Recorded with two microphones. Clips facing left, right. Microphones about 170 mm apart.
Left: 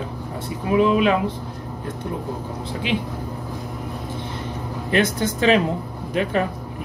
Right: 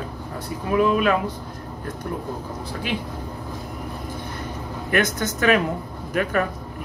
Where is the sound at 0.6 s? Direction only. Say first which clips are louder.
Left 2 dB; 25° left (ahead or behind).